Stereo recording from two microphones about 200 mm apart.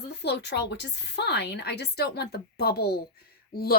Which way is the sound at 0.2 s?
55° left (ahead or behind).